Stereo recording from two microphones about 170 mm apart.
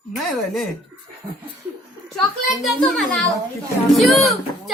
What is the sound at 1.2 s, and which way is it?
Laughter, 20° right (ahead or behind).